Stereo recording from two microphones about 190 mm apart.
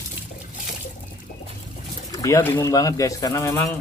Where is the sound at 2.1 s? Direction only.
15° left (ahead or behind).